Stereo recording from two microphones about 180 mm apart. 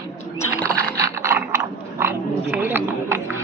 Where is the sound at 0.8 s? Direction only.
20° right (ahead or behind).